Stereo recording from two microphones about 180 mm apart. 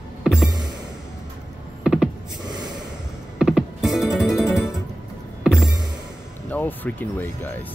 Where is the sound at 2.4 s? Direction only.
20° right (ahead or behind).